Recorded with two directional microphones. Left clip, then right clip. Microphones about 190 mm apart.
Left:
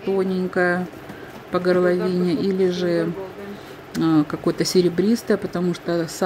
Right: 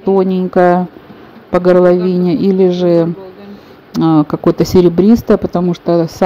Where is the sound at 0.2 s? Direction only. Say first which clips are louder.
Right 10 dB; 20° right (ahead or behind).